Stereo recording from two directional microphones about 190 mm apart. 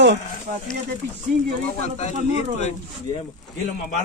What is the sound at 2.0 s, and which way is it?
Speech, 35° left (ahead or behind).